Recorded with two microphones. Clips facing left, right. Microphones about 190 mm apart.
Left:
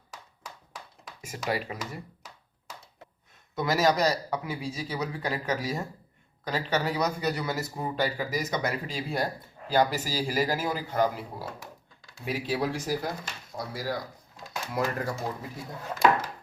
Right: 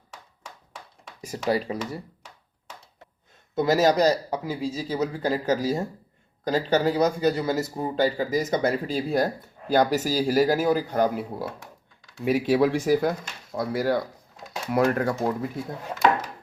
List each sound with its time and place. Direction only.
1.2 s speech: 35° right (ahead or behind)
3.5 s speech: 25° right (ahead or behind); by 15.4 s 55° right (ahead or behind)